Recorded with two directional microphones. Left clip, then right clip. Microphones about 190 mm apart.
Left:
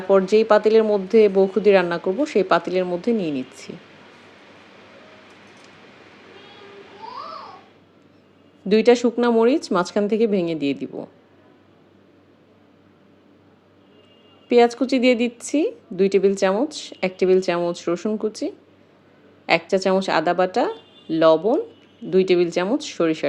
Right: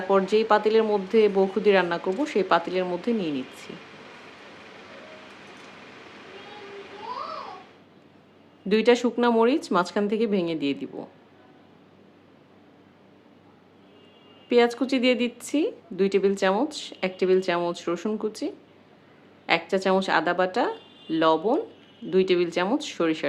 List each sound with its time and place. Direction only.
0.1 s speech: 20° left (ahead or behind)
8.7 s a woman's voice: 15° left (ahead or behind)
14.5 s a woman's voice: 15° left (ahead or behind)